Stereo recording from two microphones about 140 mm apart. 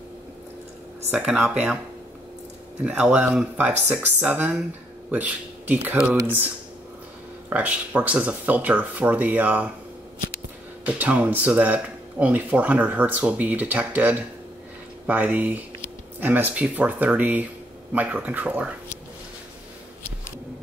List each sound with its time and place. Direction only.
1.1 s speech: 5° right (ahead or behind)
2.8 s speech: 5° right (ahead or behind)
7.4 s speech: 10° right (ahead or behind)
11.0 s speech: 10° right (ahead or behind)